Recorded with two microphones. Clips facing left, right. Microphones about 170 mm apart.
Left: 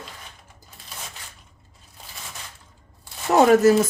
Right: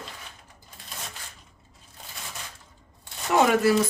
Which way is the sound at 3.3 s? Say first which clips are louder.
Left 5 dB; 40° left (ahead or behind).